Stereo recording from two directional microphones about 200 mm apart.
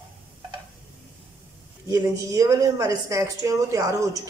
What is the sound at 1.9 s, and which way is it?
A woman's voice, 15° right (ahead or behind).